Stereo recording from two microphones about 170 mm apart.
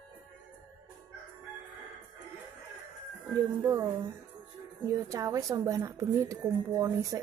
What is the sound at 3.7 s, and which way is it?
A woman's voice, 15° right (ahead or behind).